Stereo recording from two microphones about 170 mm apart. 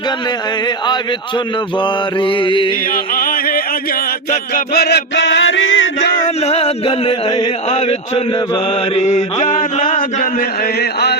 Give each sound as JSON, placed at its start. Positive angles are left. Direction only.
{"t": 1.8, "sound": "mantra", "side_deg": 30}
{"t": 2.9, "sound": "music", "side_deg": 55}
{"t": 6.2, "sound": "a sound", "side_deg": 40}
{"t": 9.0, "sound": "chant", "side_deg": 45}
{"t": 10.8, "sound": "chant", "side_deg": 80}